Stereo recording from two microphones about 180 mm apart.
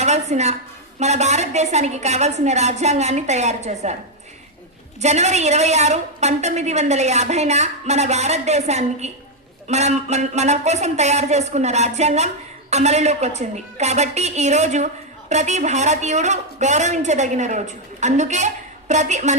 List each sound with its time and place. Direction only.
0.0 s a woman's voice: 40° right (ahead or behind)
4.9 s a woman's voice: 40° right (ahead or behind)